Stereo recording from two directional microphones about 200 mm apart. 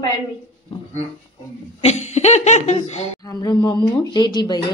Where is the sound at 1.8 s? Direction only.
35° left (ahead or behind).